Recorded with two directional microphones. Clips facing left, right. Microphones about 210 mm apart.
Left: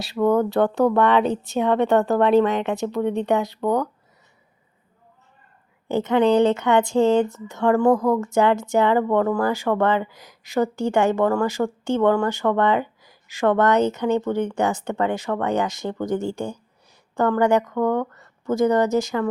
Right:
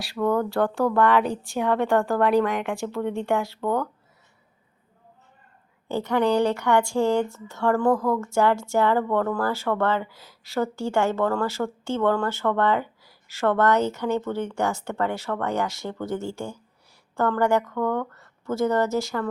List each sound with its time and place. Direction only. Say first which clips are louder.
0.0 s speech: left 4 dB; 20° left (ahead or behind)
5.9 s speech: left 4 dB; 20° left (ahead or behind)